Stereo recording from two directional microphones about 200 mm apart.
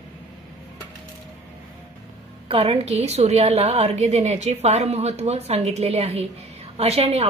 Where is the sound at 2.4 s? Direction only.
30° right (ahead or behind).